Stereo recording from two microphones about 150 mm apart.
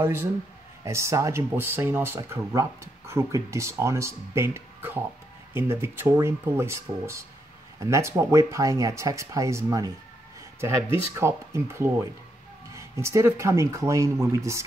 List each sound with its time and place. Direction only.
0.0 s speech: 15° right (ahead or behind)
11.1 s speech: 15° right (ahead or behind)